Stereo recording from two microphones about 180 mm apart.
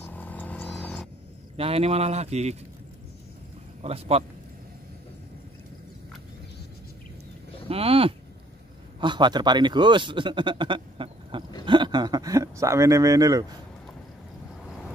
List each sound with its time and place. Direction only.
0.1 s vehicle: 10° left (ahead or behind)
1.6 s speech: 35° right (ahead or behind)
3.8 s speech: 35° right (ahead or behind)
7.6 s a man's voice: 30° right (ahead or behind)